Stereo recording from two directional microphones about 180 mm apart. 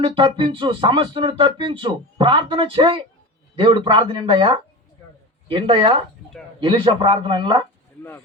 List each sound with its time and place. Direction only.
0.0 s speech: 30° right (ahead or behind)